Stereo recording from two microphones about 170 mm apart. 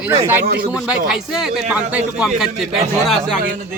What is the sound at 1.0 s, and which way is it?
A man's voice, 5° right (ahead or behind).